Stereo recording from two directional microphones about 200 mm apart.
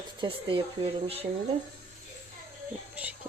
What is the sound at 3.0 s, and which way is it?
Speech, 10° right (ahead or behind).